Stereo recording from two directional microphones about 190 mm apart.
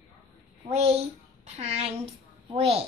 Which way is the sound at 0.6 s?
30° right (ahead or behind).